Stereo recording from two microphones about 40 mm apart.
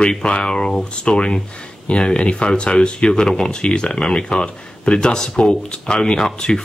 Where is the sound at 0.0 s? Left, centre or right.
Left.